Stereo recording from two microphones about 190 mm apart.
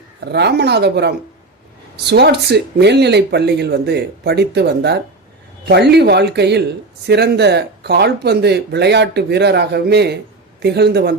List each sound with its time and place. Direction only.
0.3 s speech: 60° right (ahead or behind)